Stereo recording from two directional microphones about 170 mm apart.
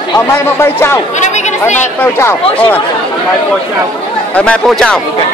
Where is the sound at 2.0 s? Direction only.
15° left (ahead or behind).